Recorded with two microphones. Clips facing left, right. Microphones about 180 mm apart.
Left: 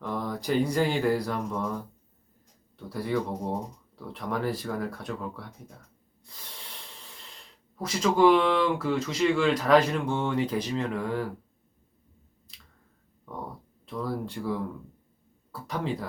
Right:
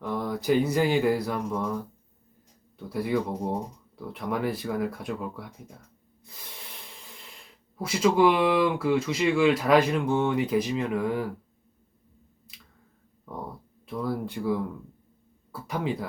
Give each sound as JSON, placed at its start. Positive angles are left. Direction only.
{"t": 0.0, "sound": "a sound", "side_deg": -10}
{"t": 0.4, "sound": "speech", "side_deg": -5}
{"t": 2.9, "sound": "speech", "side_deg": -10}
{"t": 7.8, "sound": "speech", "side_deg": -10}
{"t": 13.8, "sound": "speech", "side_deg": -10}
{"t": 15.6, "sound": "speech", "side_deg": -5}